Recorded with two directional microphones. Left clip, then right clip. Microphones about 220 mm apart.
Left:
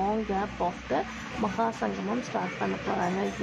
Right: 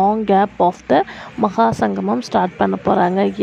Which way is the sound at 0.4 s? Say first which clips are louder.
Right 15 dB; 35° right (ahead or behind).